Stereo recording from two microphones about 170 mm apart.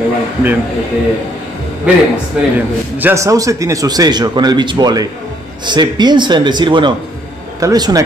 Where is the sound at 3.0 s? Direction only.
15° right (ahead or behind).